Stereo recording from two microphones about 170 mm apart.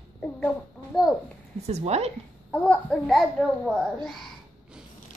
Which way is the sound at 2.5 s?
5° left (ahead or behind).